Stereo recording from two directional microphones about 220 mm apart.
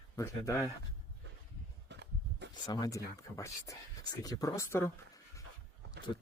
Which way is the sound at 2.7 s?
15° left (ahead or behind).